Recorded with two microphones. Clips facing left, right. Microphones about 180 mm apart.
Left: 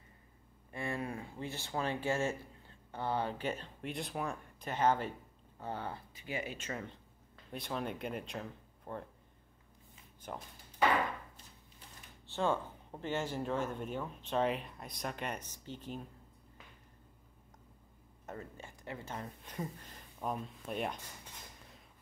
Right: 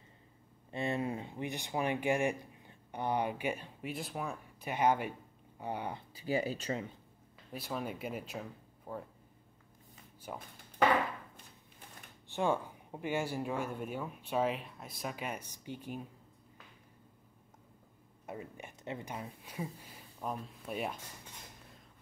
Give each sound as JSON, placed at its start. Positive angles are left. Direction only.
{"t": 0.7, "sound": "speech", "side_deg": -25}
{"t": 6.1, "sound": "speech", "side_deg": -35}
{"t": 7.5, "sound": "speech", "side_deg": -5}
{"t": 10.3, "sound": "speech", "side_deg": -5}
{"t": 12.3, "sound": "speech", "side_deg": -15}
{"t": 18.2, "sound": "speech", "side_deg": -10}